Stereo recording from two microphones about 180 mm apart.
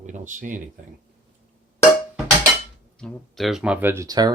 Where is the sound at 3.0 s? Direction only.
5° left (ahead or behind); by 4.3 s 20° right (ahead or behind).